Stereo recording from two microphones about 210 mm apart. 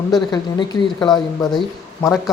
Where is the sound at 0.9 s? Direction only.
20° left (ahead or behind).